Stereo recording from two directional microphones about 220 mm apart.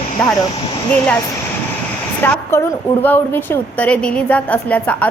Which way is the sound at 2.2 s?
10° left (ahead or behind).